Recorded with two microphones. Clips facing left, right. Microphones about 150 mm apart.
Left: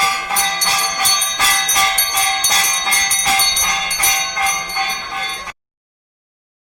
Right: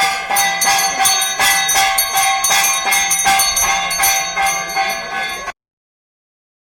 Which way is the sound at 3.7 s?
70° right (ahead or behind).